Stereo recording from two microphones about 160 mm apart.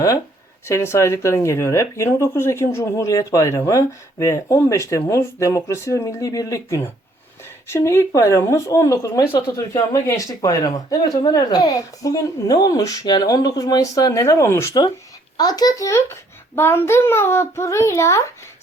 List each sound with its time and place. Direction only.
0.7 s speech: 15° left (ahead or behind)